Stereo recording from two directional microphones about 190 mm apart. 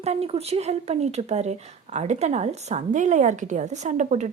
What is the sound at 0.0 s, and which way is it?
A woman's voice, 35° right (ahead or behind).